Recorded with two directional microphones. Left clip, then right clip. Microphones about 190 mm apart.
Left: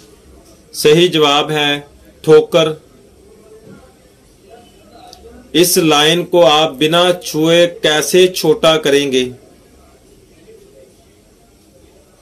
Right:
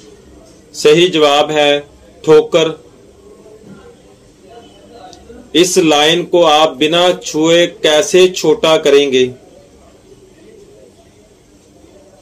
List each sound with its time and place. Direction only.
0.8 s speech: 50° left (ahead or behind)
5.8 s speech: 50° left (ahead or behind)